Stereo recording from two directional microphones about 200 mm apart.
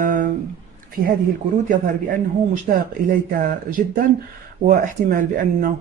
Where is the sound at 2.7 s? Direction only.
35° right (ahead or behind).